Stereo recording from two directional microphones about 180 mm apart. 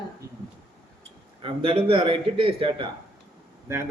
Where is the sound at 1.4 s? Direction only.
30° right (ahead or behind).